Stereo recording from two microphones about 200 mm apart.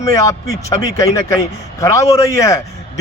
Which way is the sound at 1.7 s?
15° left (ahead or behind).